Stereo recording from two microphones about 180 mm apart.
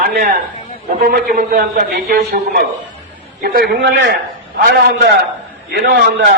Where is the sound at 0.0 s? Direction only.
55° right (ahead or behind).